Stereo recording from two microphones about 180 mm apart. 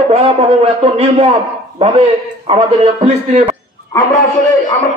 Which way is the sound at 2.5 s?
35° right (ahead or behind).